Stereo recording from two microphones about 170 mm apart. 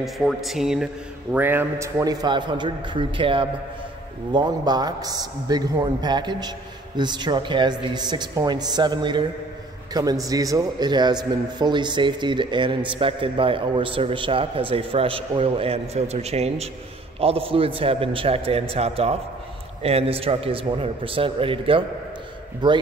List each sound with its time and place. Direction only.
0.0 s a man's voice: centre (ahead or behind); by 22.8 s 25° right (ahead or behind)